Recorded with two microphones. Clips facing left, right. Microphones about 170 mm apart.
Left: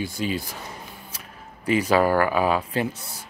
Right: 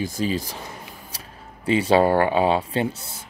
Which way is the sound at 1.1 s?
35° right (ahead or behind).